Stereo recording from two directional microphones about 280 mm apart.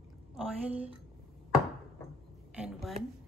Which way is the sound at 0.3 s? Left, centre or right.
Right.